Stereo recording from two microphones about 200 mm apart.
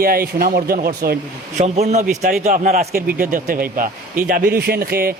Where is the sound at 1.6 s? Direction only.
35° right (ahead or behind).